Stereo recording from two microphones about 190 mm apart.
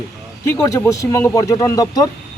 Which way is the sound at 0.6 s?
15° left (ahead or behind).